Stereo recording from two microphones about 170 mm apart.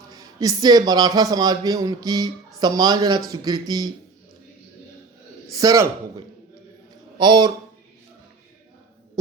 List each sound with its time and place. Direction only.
0.1 s a man's voice: 20° right (ahead or behind)
5.5 s a man's voice: 20° right (ahead or behind)
7.2 s a man's voice: 25° right (ahead or behind)